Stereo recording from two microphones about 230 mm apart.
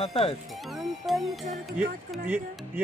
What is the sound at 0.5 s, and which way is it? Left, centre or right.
Music, centre.